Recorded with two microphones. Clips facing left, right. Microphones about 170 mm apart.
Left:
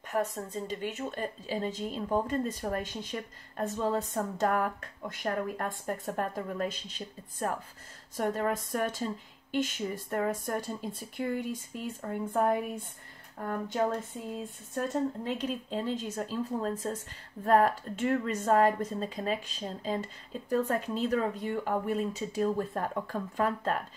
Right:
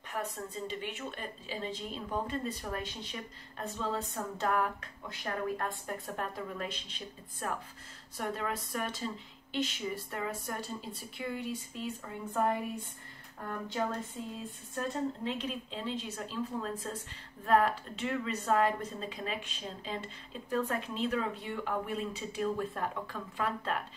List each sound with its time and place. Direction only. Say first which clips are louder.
0.1 s speech: left 6 dB; 45° left (ahead or behind)
13.5 s speech: left 5 dB; 45° left (ahead or behind)
15.2 s speech: left 3 dB; 45° left (ahead or behind)